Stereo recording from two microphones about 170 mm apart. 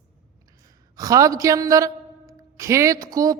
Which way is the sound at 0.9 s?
20° right (ahead or behind).